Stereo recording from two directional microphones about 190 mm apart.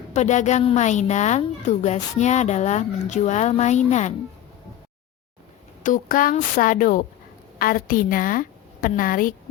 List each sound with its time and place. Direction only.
0.1 s a woman's voice: 40° left (ahead or behind)
5.8 s a woman's voice: 45° left (ahead or behind)